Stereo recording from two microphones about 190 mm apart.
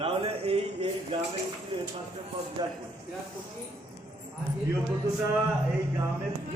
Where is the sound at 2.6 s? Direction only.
20° right (ahead or behind).